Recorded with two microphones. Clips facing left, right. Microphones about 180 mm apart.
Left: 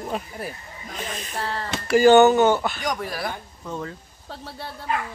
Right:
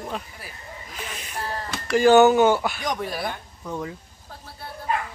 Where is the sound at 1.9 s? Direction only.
Centre (ahead or behind).